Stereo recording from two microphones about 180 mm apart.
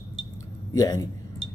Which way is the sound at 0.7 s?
20° left (ahead or behind).